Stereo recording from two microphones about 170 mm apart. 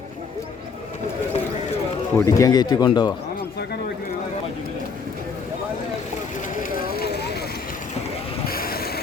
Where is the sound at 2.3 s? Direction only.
20° left (ahead or behind).